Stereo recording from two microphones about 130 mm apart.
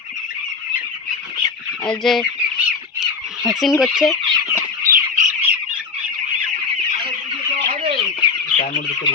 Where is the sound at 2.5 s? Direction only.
5° right (ahead or behind).